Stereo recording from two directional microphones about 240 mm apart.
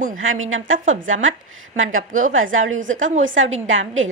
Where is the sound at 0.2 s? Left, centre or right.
Right.